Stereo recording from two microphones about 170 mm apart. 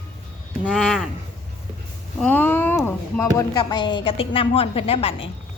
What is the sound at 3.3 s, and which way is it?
A woman's voice, 25° left (ahead or behind).